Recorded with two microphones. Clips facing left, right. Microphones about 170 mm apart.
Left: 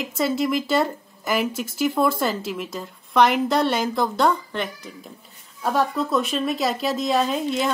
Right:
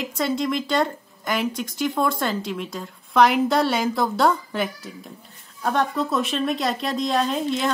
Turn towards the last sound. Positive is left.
turn(degrees=0)  # may be behind; listen again after turning